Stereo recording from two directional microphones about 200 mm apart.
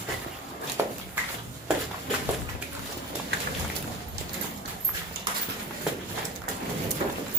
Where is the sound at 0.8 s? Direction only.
10° right (ahead or behind).